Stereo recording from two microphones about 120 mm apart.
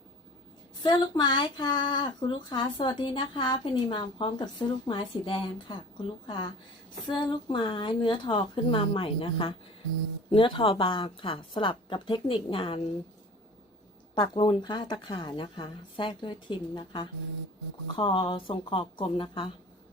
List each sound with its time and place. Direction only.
0.8 s a woman's voice: 40° left (ahead or behind)
14.2 s a woman's voice: 50° left (ahead or behind)